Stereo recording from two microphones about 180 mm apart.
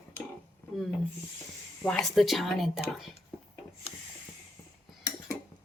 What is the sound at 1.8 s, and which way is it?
Speech, 5° left (ahead or behind).